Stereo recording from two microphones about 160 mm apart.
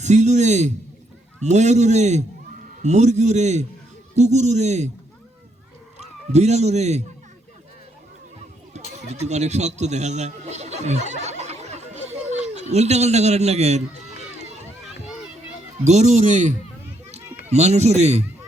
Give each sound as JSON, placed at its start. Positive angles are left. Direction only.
{"t": 0.0, "sound": "a man's voice", "side_deg": -45}
{"t": 6.0, "sound": "a man's voice", "side_deg": -45}
{"t": 9.0, "sound": "speech", "side_deg": -45}
{"t": 15.8, "sound": "a man's voice", "side_deg": -45}